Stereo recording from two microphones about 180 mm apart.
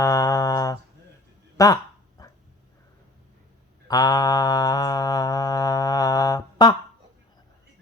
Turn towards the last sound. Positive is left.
turn(degrees=20)  # may be behind; listen again after turning